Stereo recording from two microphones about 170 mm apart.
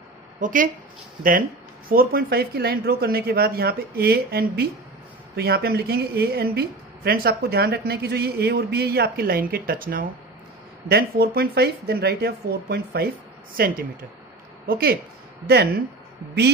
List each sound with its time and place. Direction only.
0.4 s speech: 50° right (ahead or behind)
1.9 s a woman's voice: 60° right (ahead or behind)
15.4 s a woman's voice: 70° right (ahead or behind)